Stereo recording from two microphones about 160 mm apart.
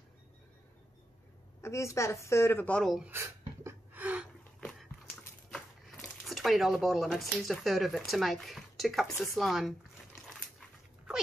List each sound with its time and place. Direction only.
1.6 s speech: 20° left (ahead or behind); by 3.1 s centre (ahead or behind)
3.1 s a sound: 15° right (ahead or behind)
4.6 s dog: centre (ahead or behind)
5.5 s speech: centre (ahead or behind)